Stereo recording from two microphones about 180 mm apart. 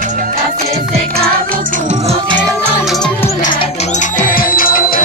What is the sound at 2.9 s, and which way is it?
Music, 5° left (ahead or behind).